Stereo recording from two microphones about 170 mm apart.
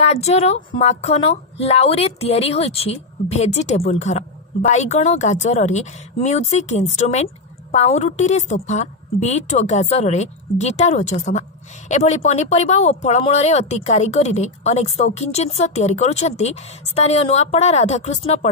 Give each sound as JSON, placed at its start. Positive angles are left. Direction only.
{"t": 0.0, "sound": "a woman's voice", "side_deg": 40}